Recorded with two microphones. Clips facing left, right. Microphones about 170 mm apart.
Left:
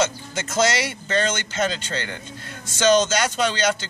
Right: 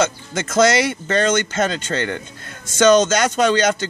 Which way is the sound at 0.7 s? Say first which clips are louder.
Right 5 dB; 55° right (ahead or behind).